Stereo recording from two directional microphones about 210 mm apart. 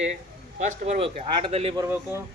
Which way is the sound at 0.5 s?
35° right (ahead or behind).